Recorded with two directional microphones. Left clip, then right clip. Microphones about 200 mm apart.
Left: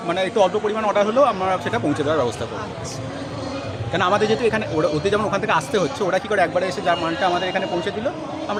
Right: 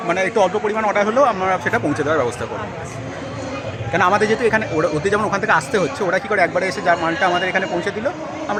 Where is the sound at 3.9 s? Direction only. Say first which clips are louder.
Right 3 dB; 5° right (ahead or behind).